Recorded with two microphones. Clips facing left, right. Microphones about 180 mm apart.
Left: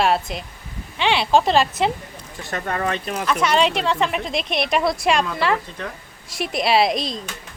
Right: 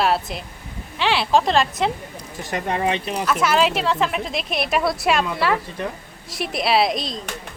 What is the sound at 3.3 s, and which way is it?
A woman's voice, 5° right (ahead or behind).